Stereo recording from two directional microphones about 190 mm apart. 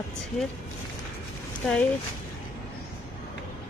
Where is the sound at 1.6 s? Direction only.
Centre (ahead or behind).